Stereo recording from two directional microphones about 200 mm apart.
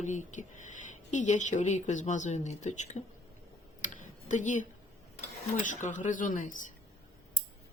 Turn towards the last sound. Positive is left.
turn(degrees=40)  # may be behind; listen again after turning